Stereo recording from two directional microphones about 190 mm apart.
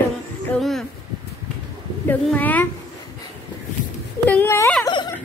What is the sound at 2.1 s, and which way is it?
Speech, 10° left (ahead or behind).